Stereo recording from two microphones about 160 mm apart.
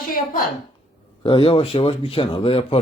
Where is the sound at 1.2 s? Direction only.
35° left (ahead or behind).